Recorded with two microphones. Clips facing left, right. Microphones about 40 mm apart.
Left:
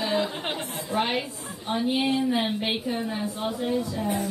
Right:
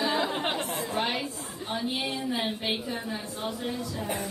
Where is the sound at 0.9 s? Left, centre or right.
Left.